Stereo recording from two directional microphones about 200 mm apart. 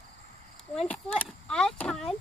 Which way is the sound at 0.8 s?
5° left (ahead or behind).